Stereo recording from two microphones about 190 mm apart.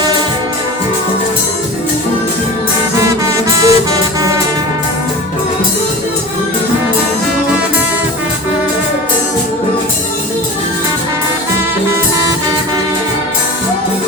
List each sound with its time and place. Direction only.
3.6 s music: 15° right (ahead or behind)